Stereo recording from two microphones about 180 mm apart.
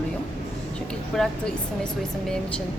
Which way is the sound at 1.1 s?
5° left (ahead or behind).